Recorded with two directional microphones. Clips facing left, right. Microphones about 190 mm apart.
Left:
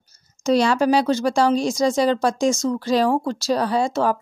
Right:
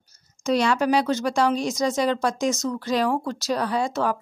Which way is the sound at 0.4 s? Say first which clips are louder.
Left 4 dB; 30° left (ahead or behind).